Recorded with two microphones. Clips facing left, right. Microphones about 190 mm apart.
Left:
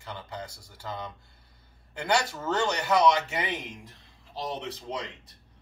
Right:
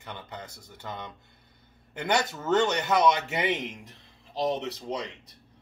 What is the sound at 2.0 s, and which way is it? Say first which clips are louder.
Speech: right 1 dB; 20° right (ahead or behind).